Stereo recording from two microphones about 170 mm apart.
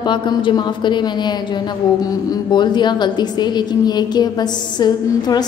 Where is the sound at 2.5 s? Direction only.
25° left (ahead or behind).